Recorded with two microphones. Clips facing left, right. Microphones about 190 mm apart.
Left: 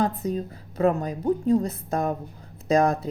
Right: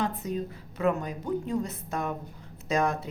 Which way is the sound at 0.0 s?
35° left (ahead or behind).